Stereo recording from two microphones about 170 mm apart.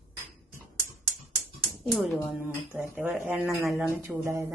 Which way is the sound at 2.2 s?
10° right (ahead or behind).